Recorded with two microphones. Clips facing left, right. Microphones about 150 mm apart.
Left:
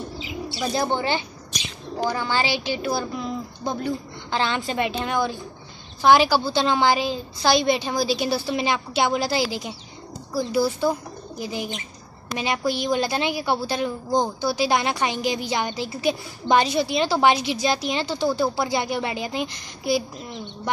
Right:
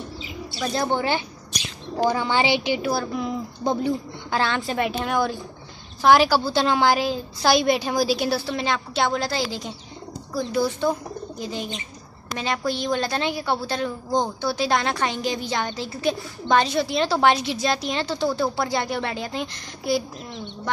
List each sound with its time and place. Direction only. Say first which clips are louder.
0.9 s a woman's voice: right 1 dB; 5° right (ahead or behind)
2.0 s a woman's voice: right 3 dB; 15° right (ahead or behind)
2.8 s a woman's voice: right 1 dB; 5° right (ahead or behind)
4.4 s a woman's voice: even; centre (ahead or behind)